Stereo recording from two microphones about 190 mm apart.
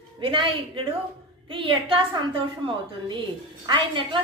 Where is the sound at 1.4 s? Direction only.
25° right (ahead or behind).